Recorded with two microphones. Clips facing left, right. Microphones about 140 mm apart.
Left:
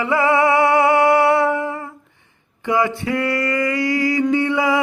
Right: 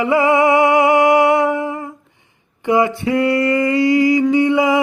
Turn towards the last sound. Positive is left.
turn(degrees=-20)  # may be behind; listen again after turning